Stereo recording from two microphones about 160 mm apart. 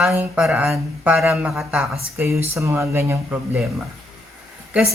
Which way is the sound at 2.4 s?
15° right (ahead or behind).